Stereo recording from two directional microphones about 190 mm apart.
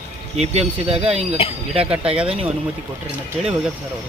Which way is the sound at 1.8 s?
5° right (ahead or behind).